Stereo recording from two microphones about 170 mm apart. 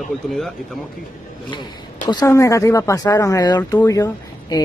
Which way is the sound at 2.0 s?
20° left (ahead or behind).